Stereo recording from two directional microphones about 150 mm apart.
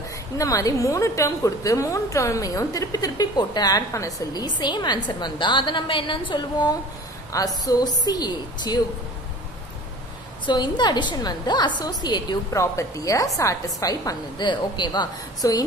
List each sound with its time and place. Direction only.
0.4 s a woman's voice: 25° left (ahead or behind)
10.4 s a woman's voice: 30° left (ahead or behind)